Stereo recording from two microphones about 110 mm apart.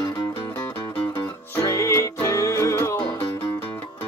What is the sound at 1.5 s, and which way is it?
Music, 30° left (ahead or behind).